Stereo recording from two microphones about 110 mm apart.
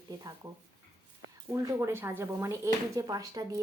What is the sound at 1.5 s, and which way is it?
A woman's voice, 30° right (ahead or behind).